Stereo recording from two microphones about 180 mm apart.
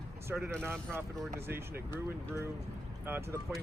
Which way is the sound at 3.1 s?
10° right (ahead or behind).